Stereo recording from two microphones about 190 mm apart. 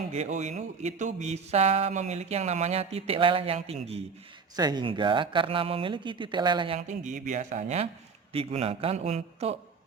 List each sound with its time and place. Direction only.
0.1 s speech: 35° right (ahead or behind)
4.5 s speech: 20° right (ahead or behind)
6.7 s speech: 40° right (ahead or behind)